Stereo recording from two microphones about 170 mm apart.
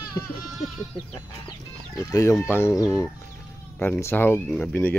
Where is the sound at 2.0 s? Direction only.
15° left (ahead or behind).